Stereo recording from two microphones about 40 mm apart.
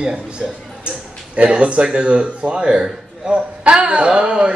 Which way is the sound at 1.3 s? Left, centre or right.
Right.